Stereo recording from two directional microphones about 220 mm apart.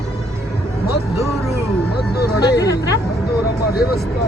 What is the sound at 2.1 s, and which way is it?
Speech, 45° left (ahead or behind).